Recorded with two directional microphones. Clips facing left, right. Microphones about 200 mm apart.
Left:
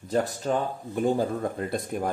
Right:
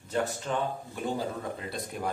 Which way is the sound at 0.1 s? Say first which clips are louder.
Left 5 dB; 40° left (ahead or behind).